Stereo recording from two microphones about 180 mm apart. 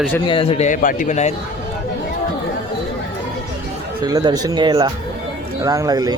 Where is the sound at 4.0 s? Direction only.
20° right (ahead or behind).